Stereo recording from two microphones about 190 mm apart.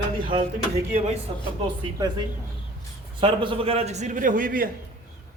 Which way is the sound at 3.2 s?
25° right (ahead or behind).